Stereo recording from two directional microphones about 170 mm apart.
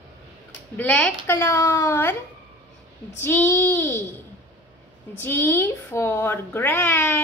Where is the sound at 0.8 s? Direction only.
5° left (ahead or behind).